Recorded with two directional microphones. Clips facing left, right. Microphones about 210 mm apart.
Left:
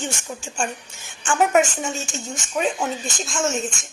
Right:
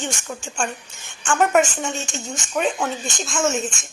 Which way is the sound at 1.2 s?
5° left (ahead or behind).